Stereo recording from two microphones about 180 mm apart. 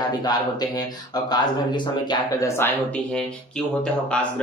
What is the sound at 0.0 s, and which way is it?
A man's voice, 20° left (ahead or behind).